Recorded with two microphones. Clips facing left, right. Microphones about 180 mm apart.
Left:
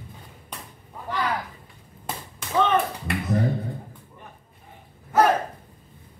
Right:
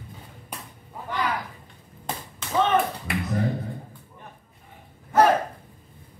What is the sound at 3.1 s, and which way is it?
Finger snapping, centre (ahead or behind).